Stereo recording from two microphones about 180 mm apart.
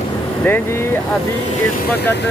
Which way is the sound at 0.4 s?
10° left (ahead or behind).